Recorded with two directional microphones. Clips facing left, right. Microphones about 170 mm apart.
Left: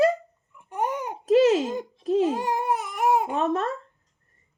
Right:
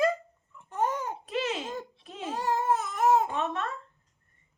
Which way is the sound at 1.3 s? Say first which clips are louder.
Left 15 dB; 40° left (ahead or behind).